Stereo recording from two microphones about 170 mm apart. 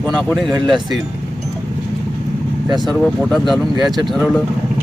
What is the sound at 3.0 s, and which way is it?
Speech, centre (ahead or behind).